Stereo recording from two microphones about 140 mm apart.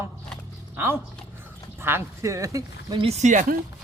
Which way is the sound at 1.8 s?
20° right (ahead or behind).